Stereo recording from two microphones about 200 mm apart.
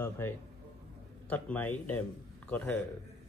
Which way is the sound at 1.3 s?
5° left (ahead or behind).